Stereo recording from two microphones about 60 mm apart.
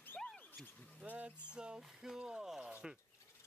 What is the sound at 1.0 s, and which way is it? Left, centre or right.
Music, right.